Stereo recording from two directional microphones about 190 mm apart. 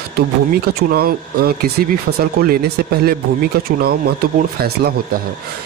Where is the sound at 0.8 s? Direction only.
55° right (ahead or behind).